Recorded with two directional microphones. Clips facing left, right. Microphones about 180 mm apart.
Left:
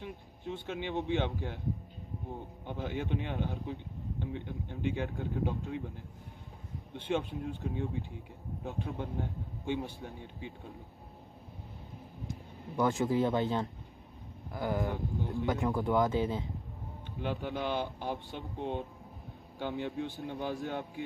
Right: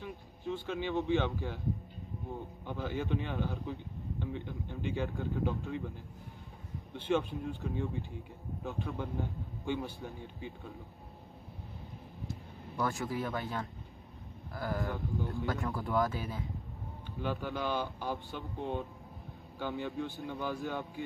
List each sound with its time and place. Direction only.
0.0 s speech: 20° left (ahead or behind)
2.6 s a man's voice: 20° left (ahead or behind)
7.1 s a man's voice: 20° left (ahead or behind)
12.7 s speech: 20° left (ahead or behind)